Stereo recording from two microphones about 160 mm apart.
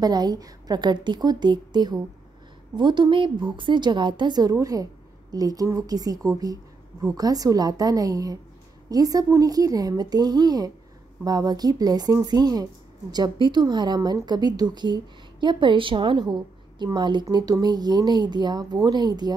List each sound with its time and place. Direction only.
0.0 s a woman's voice: 25° right (ahead or behind)